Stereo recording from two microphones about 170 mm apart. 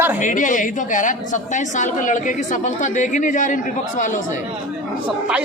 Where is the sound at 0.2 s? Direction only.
50° left (ahead or behind).